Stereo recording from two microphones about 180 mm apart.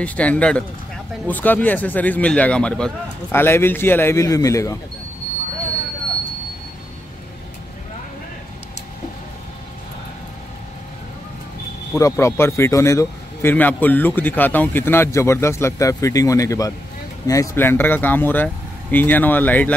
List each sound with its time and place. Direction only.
0.0 s a man's voice: 10° left (ahead or behind)
11.9 s a man's voice: 15° left (ahead or behind)